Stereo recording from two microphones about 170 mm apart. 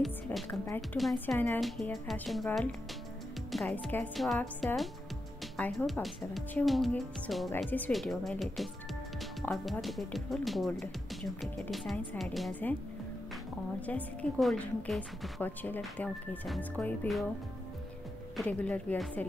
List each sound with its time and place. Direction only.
0.0 s music: centre (ahead or behind)
0.7 s a woman's voice: centre (ahead or behind)
13.7 s a woman's voice: 10° left (ahead or behind)
15.4 s a woman's voice: 10° left (ahead or behind)
18.3 s a woman's voice: 5° left (ahead or behind)